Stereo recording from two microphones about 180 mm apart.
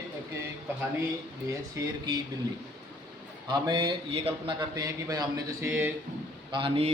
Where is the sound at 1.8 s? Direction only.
15° right (ahead or behind).